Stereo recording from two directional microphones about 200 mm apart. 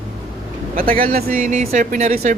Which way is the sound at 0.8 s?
45° right (ahead or behind).